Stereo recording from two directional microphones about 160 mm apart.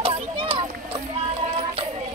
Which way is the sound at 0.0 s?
35° right (ahead or behind).